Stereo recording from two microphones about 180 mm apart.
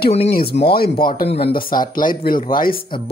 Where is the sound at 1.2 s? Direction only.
35° left (ahead or behind).